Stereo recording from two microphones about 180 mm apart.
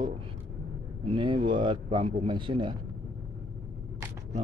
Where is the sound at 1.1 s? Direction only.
30° right (ahead or behind).